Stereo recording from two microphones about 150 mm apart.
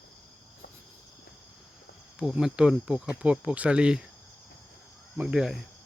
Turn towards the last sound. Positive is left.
turn(degrees=0)  # may be behind; listen again after turning